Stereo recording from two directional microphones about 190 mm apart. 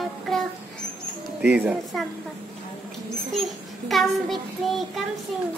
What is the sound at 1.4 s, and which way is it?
Child singing, 5° right (ahead or behind).